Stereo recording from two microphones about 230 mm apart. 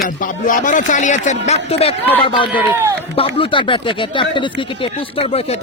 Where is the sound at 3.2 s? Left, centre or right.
Left.